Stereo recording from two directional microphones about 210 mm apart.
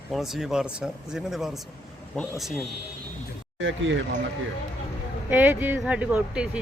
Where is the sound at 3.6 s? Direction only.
65° right (ahead or behind).